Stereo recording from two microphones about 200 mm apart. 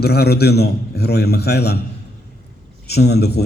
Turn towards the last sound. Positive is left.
turn(degrees=55)  # may be behind; listen again after turning